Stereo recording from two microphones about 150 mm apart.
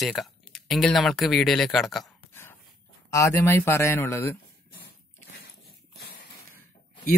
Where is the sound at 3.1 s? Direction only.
20° left (ahead or behind).